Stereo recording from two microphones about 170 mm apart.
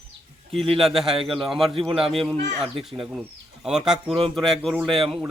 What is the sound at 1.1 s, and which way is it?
Speech, 30° right (ahead or behind).